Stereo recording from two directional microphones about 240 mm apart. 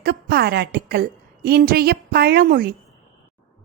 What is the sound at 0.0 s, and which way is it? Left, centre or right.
A woman's voice, right.